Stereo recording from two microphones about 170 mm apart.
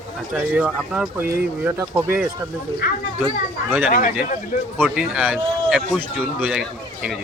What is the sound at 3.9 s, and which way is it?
Speech, 50° left (ahead or behind).